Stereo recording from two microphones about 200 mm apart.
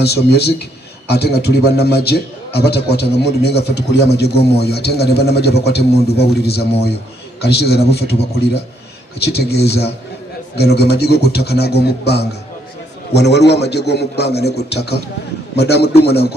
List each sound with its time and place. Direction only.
0.0 s a man's voice: 55° left (ahead or behind)